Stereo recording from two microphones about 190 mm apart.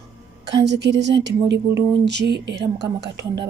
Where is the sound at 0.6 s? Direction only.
65° right (ahead or behind).